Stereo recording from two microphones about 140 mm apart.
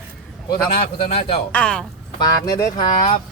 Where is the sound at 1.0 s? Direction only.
45° left (ahead or behind).